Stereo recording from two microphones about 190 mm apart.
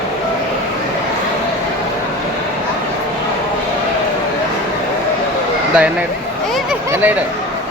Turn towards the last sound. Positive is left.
turn(degrees=-10)  # may be behind; listen again after turning